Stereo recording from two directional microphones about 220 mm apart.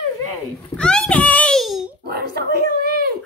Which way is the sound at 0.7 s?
5° left (ahead or behind).